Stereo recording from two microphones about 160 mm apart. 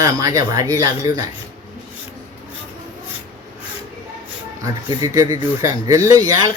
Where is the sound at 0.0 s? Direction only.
20° right (ahead or behind).